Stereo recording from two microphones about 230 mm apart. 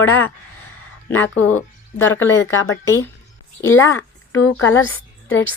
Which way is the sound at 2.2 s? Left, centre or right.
Left.